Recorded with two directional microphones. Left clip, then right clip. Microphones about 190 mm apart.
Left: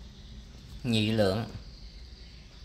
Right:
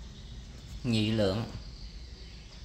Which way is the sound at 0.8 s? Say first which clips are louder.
Left 2 dB; 45° left (ahead or behind).